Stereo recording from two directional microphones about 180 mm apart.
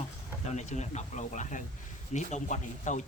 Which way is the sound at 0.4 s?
40° left (ahead or behind).